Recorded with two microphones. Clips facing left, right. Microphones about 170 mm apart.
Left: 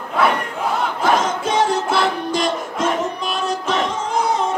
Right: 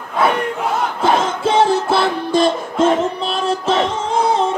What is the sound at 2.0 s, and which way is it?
Music, 30° right (ahead or behind).